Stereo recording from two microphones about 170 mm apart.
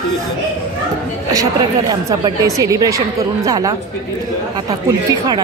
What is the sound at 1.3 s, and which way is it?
A woman's voice, 20° right (ahead or behind).